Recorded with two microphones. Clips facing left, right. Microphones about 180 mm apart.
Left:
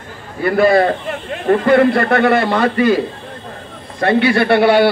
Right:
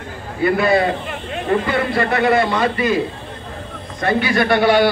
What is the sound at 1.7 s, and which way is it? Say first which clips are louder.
A man's voice: left 7 dB; 60° left (ahead or behind).